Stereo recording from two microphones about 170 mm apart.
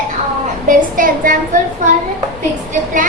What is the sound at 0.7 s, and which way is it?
Speech, 50° right (ahead or behind).